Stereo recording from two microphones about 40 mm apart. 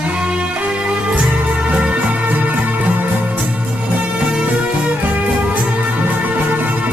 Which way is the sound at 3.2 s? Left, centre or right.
Right.